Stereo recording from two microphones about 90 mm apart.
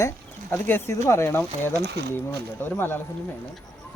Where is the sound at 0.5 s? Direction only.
25° left (ahead or behind).